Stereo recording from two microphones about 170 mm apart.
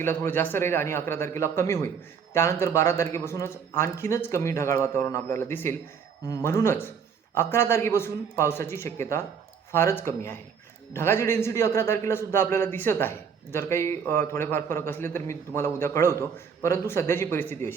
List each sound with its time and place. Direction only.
0.0 s a man's voice: 15° left (ahead or behind)